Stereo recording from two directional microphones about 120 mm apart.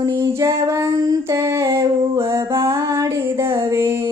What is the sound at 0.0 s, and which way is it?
Female singing, 25° right (ahead or behind).